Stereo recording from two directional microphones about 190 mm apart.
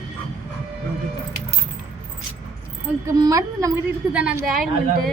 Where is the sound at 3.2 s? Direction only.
20° right (ahead or behind).